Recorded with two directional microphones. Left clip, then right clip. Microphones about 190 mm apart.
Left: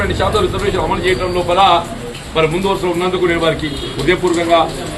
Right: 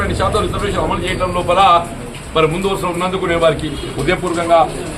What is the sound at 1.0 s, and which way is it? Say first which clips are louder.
Speech: left 2 dB; 15° right (ahead or behind).